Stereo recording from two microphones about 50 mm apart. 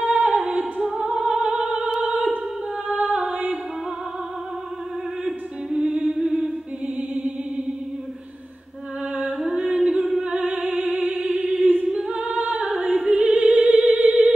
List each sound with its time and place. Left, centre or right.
0.0 s music: right
0.5 s opera: right
0.8 s music: centre
2.0 s opera: right
5.8 s a capella: centre
7.2 s music: centre
9.2 s music: centre
9.9 s singing: centre
10.2 s music: right
11.3 s choir: centre
11.6 s choir: right
11.9 s a capella: centre
12.3 s opera: right